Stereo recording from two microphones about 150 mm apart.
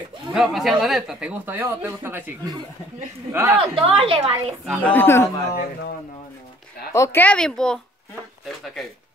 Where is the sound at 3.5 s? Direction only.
40° right (ahead or behind).